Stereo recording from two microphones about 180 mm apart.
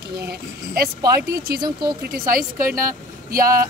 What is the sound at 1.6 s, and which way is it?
Speech, 25° right (ahead or behind).